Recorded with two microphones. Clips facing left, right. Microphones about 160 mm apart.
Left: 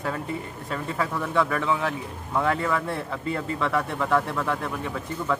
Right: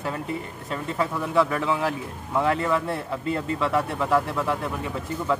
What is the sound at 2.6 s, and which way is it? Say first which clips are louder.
Speech: right 2 dB; 25° right (ahead or behind).